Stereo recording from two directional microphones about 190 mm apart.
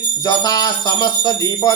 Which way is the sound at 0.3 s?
20° left (ahead or behind).